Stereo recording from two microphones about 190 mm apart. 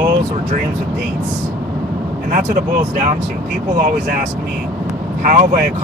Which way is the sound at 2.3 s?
50° right (ahead or behind).